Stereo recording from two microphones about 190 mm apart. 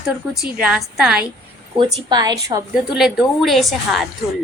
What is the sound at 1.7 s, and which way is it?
Speech, 20° right (ahead or behind).